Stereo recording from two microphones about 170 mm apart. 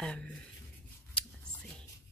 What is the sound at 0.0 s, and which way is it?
Speech, 5° left (ahead or behind).